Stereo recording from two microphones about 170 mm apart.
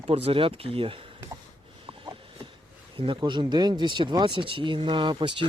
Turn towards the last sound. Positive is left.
turn(degrees=-30)  # may be behind; listen again after turning